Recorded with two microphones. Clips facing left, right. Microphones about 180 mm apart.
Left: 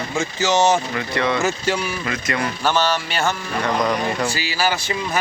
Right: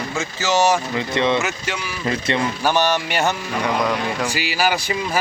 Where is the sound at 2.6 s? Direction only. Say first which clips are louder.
Left 1 dB; 15° right (ahead or behind).